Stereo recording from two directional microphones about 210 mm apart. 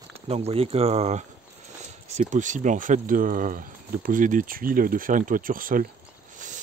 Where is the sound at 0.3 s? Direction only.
30° right (ahead or behind).